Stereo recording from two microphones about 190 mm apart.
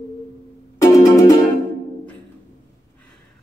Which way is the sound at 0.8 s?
20° left (ahead or behind).